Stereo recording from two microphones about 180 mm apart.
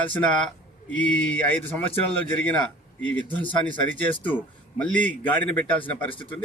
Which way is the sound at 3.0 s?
10° left (ahead or behind).